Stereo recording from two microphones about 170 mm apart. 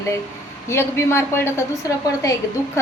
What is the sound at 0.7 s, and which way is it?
A woman's voice, 15° left (ahead or behind).